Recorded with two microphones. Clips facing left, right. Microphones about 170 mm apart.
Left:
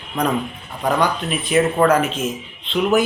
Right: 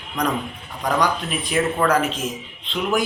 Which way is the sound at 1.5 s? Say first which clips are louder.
Left 5 dB; 5° left (ahead or behind).